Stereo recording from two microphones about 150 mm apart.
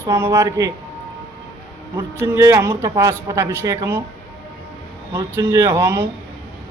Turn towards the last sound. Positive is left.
turn(degrees=-15)  # may be behind; listen again after turning